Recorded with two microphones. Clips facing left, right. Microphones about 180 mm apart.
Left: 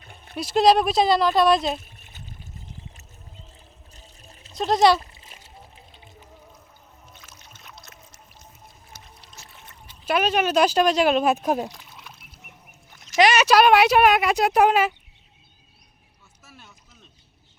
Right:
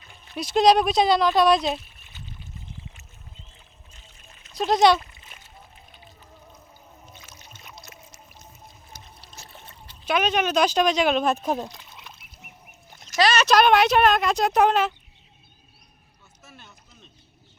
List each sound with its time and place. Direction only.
0.0 s a sound: 55° left (ahead or behind)
0.3 s speech: centre (ahead or behind)
1.8 s a sound: 45° left (ahead or behind)
3.9 s a sound: 35° left (ahead or behind)
4.5 s speech: centre (ahead or behind)
4.9 s splash: 30° left (ahead or behind)
7.1 s rowboat: 5° left (ahead or behind)
7.7 s a sound: 5° right (ahead or behind)
9.0 s trickle: 30° right (ahead or behind)
10.1 s speech: 5° left (ahead or behind)
12.2 s bird: centre (ahead or behind)
13.1 s speech: 15° left (ahead or behind)
16.4 s boat: 5° left (ahead or behind)